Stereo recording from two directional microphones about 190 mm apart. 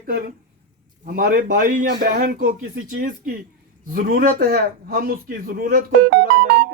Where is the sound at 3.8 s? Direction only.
45° right (ahead or behind).